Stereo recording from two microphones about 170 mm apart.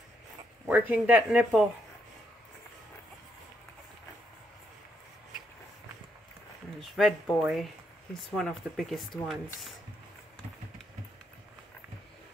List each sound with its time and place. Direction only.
0.7 s speech: 10° right (ahead or behind)
6.8 s speech: centre (ahead or behind)